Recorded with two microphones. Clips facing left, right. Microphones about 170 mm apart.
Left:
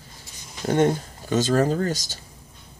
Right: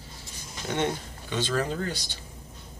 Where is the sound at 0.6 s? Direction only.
45° left (ahead or behind).